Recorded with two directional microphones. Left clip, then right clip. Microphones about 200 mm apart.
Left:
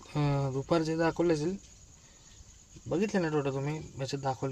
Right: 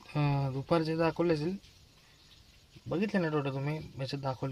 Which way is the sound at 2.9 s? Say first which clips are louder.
Left 2 dB; centre (ahead or behind).